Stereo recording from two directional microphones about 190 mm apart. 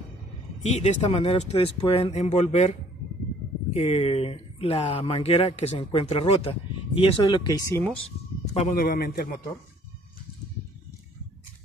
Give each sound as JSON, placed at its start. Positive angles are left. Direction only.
{"t": 0.6, "sound": "speech", "side_deg": 35}
{"t": 8.7, "sound": "a man's voice", "side_deg": 50}